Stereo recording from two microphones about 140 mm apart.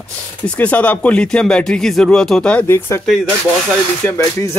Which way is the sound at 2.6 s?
20° left (ahead or behind).